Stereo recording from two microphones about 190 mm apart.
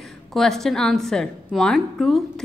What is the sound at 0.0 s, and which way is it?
A woman's voice, centre (ahead or behind).